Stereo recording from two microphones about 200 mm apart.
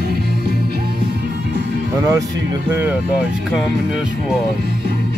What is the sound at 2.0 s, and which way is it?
Speech, 15° right (ahead or behind).